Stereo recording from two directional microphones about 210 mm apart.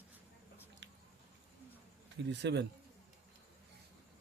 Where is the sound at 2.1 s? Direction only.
55° right (ahead or behind).